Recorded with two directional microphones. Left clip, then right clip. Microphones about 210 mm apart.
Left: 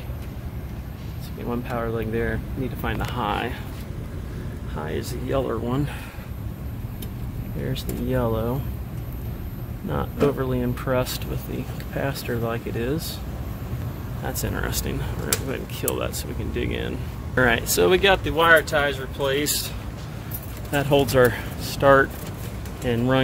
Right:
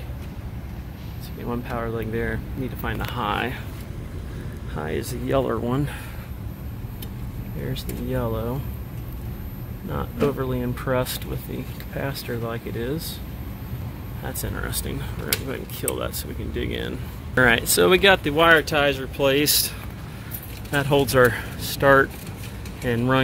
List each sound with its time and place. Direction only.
1.5 s speech: centre (ahead or behind)
4.7 s speech: 20° right (ahead or behind)
7.6 s speech: 5° left (ahead or behind)
9.8 s speech: 5° left (ahead or behind)
14.2 s speech: 5° left (ahead or behind); by 18.2 s 15° right (ahead or behind)
18.2 s speech: 35° right (ahead or behind)
20.7 s speech: centre (ahead or behind)